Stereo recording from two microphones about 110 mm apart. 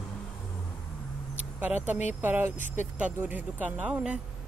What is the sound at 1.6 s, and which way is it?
Speech, 15° right (ahead or behind).